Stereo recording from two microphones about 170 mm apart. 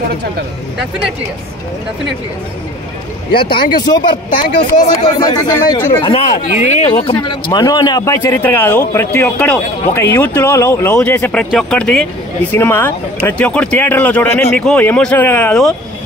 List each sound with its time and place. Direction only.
3.3 s speech: 30° left (ahead or behind)
6.6 s speech: 40° left (ahead or behind)
7.2 s speech: 25° left (ahead or behind); by 15.7 s 5° left (ahead or behind)